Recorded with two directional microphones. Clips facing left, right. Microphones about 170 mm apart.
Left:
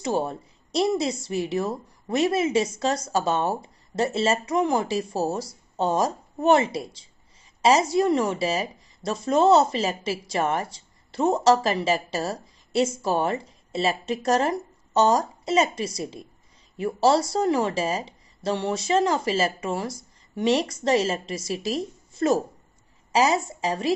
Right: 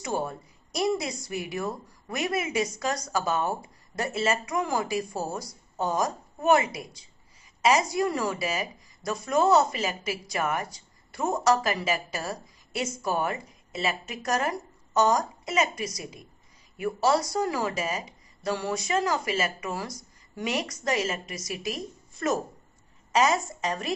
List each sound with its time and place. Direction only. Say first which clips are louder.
0.0 s a woman's voice: left 5 dB; 25° left (ahead or behind)